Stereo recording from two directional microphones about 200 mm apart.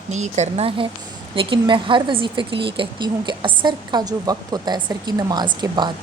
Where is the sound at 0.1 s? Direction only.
35° right (ahead or behind).